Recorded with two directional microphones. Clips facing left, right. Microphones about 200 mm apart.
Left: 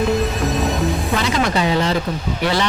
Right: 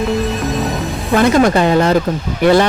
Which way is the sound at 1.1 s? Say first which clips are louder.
Right 12 dB; 50° right (ahead or behind).